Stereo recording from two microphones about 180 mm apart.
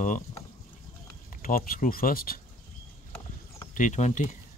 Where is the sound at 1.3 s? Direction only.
50° left (ahead or behind).